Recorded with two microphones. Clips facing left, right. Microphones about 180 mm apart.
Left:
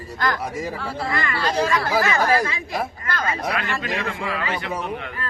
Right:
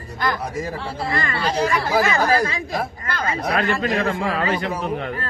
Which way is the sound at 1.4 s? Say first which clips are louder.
Even; 15° right (ahead or behind).